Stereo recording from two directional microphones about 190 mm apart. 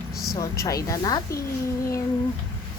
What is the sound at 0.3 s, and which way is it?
Speech, 15° left (ahead or behind).